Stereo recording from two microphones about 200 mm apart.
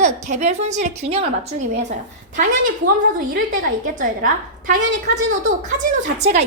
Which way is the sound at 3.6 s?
45° right (ahead or behind).